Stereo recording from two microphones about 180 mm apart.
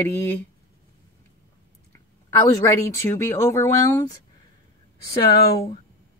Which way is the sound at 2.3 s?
20° left (ahead or behind).